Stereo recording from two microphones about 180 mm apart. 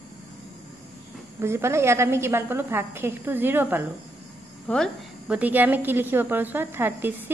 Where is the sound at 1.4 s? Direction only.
15° right (ahead or behind).